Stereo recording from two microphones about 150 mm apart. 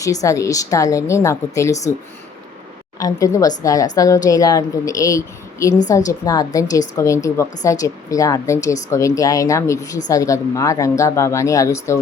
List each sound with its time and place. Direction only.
0.0 s a woman's voice: 20° left (ahead or behind)
3.0 s a woman's voice: 25° left (ahead or behind)